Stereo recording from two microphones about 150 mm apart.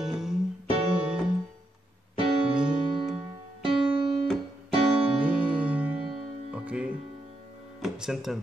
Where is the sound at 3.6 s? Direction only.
35° right (ahead or behind).